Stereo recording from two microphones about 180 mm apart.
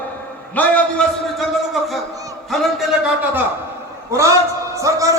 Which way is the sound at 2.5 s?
Centre (ahead or behind).